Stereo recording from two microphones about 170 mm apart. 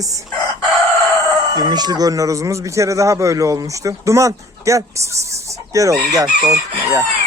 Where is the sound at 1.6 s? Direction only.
25° right (ahead or behind).